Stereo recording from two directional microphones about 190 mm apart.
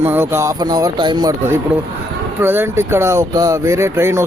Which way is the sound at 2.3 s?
10° right (ahead or behind).